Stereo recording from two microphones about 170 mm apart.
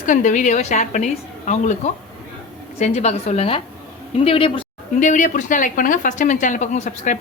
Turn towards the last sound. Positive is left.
turn(degrees=50)  # may be behind; listen again after turning